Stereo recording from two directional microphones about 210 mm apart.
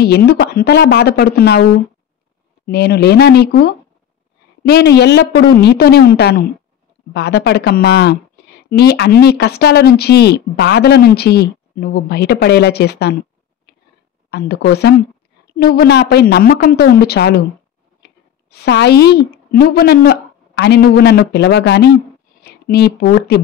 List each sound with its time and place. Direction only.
0.0 s speech: 50° left (ahead or behind)
13.7 s a sound: 50° left (ahead or behind)
14.3 s a woman's voice: 50° left (ahead or behind)